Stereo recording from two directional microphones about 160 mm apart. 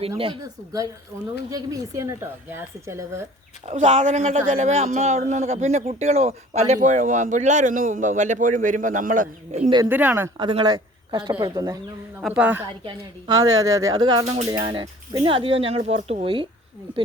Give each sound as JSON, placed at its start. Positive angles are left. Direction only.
{"t": 0.4, "sound": "a woman's voice", "side_deg": -20}
{"t": 3.7, "sound": "a man's voice", "side_deg": -45}
{"t": 9.9, "sound": "speech", "side_deg": -10}
{"t": 10.4, "sound": "a woman's voice", "side_deg": -30}
{"t": 12.3, "sound": "speech", "side_deg": -10}
{"t": 12.8, "sound": "a woman's voice", "side_deg": -25}